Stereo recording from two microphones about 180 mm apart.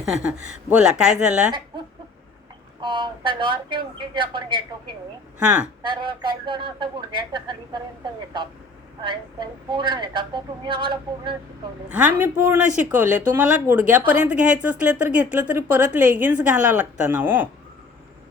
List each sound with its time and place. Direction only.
0.0 s a woman's voice: 5° right (ahead or behind)
2.8 s speech: 25° right (ahead or behind)
5.4 s speech: 10° right (ahead or behind)
5.8 s speech: 25° right (ahead or behind)
9.0 s speech: 25° right (ahead or behind)
11.9 s speech: 10° right (ahead or behind)